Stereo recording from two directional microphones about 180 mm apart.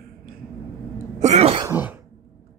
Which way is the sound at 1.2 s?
35° right (ahead or behind).